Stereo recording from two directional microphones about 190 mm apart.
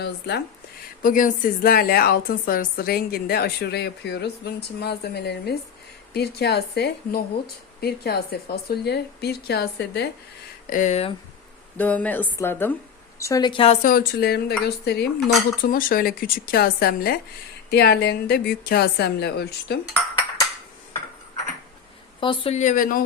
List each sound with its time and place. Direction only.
0.0 s speech: 60° left (ahead or behind)
1.0 s a woman's voice: 45° left (ahead or behind); by 10.1 s 60° left (ahead or behind)
10.7 s a woman's voice: 40° left (ahead or behind)
11.8 s a woman's voice: 10° left (ahead or behind); by 13.7 s 25° left (ahead or behind)
13.8 s a woman's voice: 50° left (ahead or behind)
22.2 s a woman's voice: 30° left (ahead or behind); by 23.0 s 45° left (ahead or behind)